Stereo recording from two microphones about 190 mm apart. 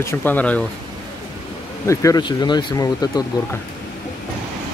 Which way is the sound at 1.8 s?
20° left (ahead or behind).